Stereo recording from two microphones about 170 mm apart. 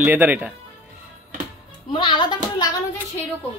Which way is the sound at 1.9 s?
30° left (ahead or behind).